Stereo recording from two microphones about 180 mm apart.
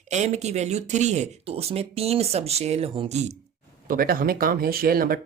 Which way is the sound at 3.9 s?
55° right (ahead or behind).